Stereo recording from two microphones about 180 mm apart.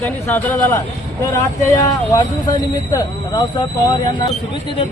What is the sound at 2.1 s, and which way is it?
Speech, 20° left (ahead or behind).